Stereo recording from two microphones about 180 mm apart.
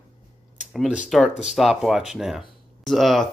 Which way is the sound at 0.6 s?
5° right (ahead or behind).